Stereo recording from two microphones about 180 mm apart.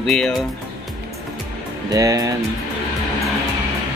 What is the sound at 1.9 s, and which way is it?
Speech, 20° right (ahead or behind).